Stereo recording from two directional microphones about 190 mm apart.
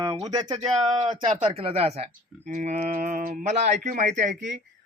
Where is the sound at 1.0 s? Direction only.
35° right (ahead or behind).